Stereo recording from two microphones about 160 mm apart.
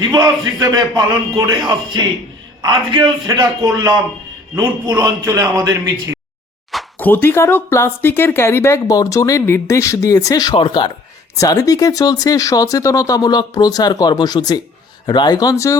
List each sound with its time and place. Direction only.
0.0 s a man's voice: 25° right (ahead or behind)
7.0 s speech: 15° left (ahead or behind)